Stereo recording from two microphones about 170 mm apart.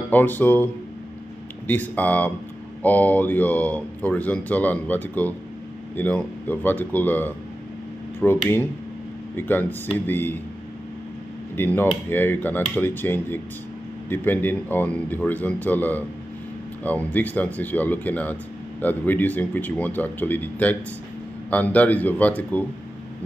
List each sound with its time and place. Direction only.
0.1 s speech: 10° left (ahead or behind)
1.7 s speech: 10° left (ahead or behind)
11.5 s speech: 10° left (ahead or behind)